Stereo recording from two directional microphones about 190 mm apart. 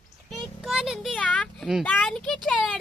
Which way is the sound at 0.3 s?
Centre (ahead or behind).